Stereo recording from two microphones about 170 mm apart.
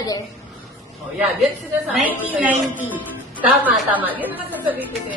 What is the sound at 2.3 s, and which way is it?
Speech, 10° right (ahead or behind).